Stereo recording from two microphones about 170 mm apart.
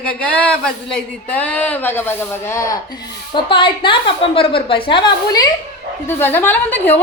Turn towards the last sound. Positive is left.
turn(degrees=10)  # may be behind; listen again after turning